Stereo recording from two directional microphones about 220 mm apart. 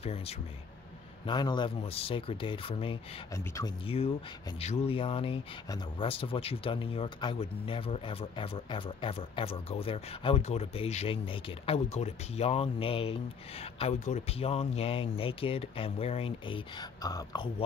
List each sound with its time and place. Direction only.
0.0 s speech: 25° left (ahead or behind)
3.3 s speech: 15° left (ahead or behind)
3.8 s speech: 25° left (ahead or behind)